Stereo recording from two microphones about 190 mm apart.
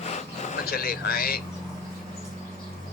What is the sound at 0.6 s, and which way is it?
Speech, 55° left (ahead or behind).